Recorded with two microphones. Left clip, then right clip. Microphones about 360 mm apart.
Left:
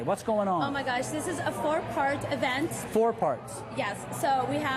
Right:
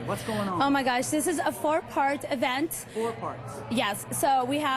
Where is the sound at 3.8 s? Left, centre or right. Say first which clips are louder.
Right 3 dB; right.